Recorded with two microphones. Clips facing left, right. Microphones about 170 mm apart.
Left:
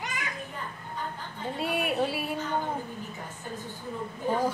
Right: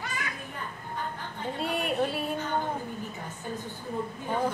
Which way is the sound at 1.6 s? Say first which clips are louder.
Left 1 dB; 5° left (ahead or behind).